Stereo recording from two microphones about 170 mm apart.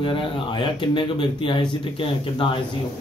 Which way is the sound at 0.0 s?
30° left (ahead or behind).